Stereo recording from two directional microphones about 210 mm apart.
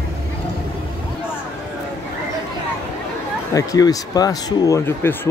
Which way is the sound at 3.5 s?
15° left (ahead or behind).